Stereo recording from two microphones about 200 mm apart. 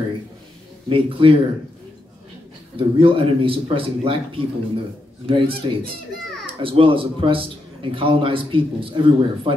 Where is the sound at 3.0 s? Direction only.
25° right (ahead or behind).